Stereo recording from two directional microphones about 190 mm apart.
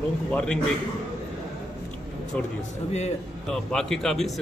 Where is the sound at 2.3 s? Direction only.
5° left (ahead or behind).